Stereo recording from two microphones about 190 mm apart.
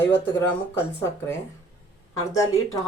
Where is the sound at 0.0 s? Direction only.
10° left (ahead or behind).